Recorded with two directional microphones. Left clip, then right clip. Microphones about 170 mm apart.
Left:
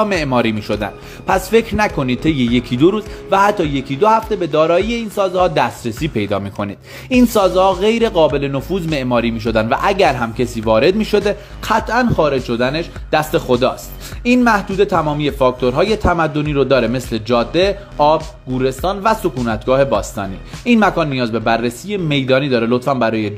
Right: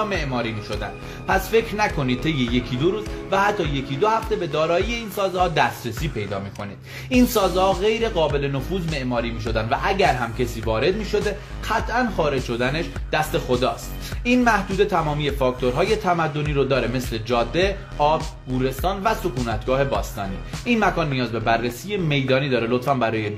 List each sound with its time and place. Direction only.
0.1 s a man's voice: 45° left (ahead or behind); by 23.3 s 25° left (ahead or behind)